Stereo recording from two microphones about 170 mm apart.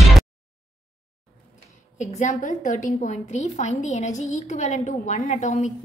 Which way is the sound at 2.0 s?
45° left (ahead or behind).